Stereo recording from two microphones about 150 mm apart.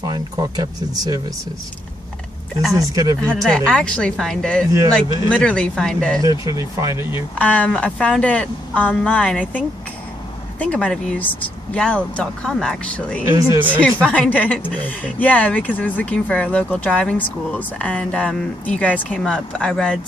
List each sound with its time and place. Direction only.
0.0 s speech: 25° right (ahead or behind)
2.7 s speech: 20° right (ahead or behind)
3.3 s speech: 5° left (ahead or behind)
6.4 s speech: 20° right (ahead or behind)
7.3 s speech: 10° left (ahead or behind)
10.6 s speech: 5° left (ahead or behind)